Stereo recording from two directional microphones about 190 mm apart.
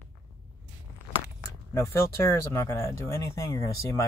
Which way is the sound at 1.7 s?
15° left (ahead or behind).